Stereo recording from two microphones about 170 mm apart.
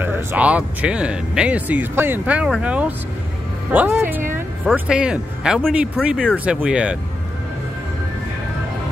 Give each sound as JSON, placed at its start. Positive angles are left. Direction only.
{"t": 0.0, "sound": "speech", "side_deg": -15}